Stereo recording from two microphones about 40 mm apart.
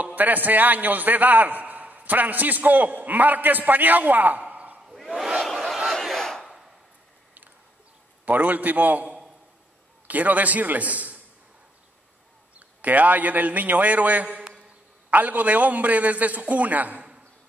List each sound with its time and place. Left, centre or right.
0.0 s a man's voice: right
4.9 s battle cry: centre
5.4 s a sound: centre
5.9 s battle cry: centre
8.3 s a man's voice: right
12.5 s a man's voice: right
14.5 s a sound: right
15.1 s a man's voice: right